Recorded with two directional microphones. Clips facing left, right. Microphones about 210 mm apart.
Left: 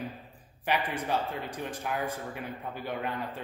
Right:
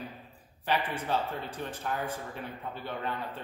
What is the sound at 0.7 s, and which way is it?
A man's voice, 15° left (ahead or behind).